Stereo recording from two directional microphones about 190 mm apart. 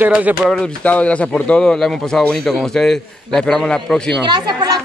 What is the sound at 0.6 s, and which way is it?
Speech, 5° left (ahead or behind).